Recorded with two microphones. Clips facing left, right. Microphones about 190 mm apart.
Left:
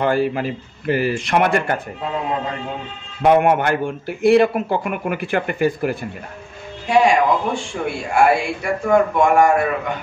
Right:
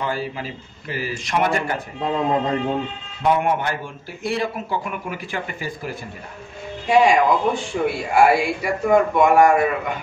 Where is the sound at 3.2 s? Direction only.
60° left (ahead or behind).